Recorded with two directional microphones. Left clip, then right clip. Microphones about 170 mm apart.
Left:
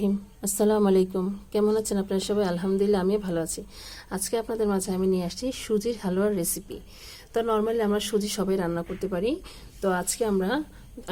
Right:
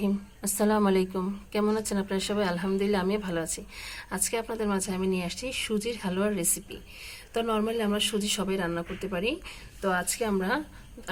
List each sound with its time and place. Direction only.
0.0 s a woman's voice: 35° left (ahead or behind)